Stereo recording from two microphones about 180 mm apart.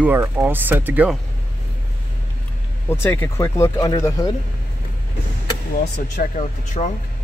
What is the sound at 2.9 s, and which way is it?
Speech, 10° left (ahead or behind).